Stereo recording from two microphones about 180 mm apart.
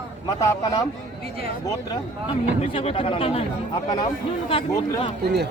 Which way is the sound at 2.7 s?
30° left (ahead or behind).